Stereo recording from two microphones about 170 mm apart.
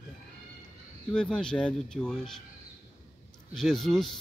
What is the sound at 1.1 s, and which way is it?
Speech, 5° left (ahead or behind).